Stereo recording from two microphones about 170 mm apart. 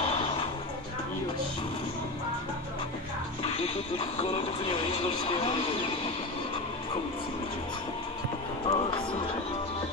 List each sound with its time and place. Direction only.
0.1 s music: 35° left (ahead or behind)
4.2 s speech: 35° left (ahead or behind)
8.6 s music: 35° left (ahead or behind)